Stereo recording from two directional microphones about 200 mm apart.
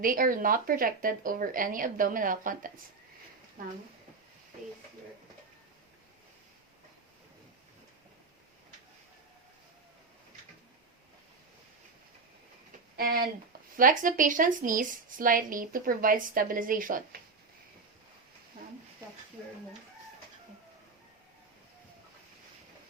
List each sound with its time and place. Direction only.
0.0 s a woman's voice: 45° right (ahead or behind)
13.0 s a woman's voice: 50° right (ahead or behind)